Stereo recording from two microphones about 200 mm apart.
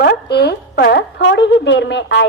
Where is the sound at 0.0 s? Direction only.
55° left (ahead or behind).